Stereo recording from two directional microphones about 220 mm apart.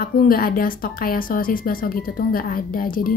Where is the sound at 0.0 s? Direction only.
40° left (ahead or behind).